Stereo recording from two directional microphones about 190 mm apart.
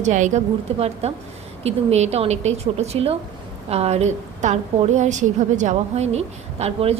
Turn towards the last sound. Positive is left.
turn(degrees=-30)  # may be behind; listen again after turning